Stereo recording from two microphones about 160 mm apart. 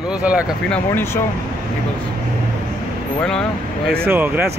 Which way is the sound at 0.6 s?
10° left (ahead or behind).